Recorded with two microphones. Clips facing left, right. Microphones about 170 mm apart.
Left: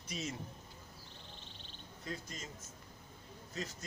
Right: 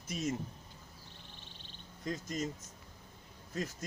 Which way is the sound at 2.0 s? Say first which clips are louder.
Right 8 dB; 45° right (ahead or behind).